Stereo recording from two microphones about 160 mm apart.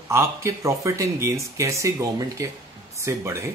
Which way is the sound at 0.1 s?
15° right (ahead or behind).